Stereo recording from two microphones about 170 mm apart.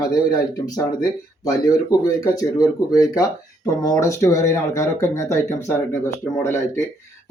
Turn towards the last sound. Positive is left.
turn(degrees=15)  # may be behind; listen again after turning